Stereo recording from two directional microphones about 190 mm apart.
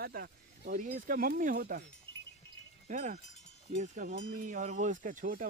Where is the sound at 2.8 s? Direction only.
40° right (ahead or behind).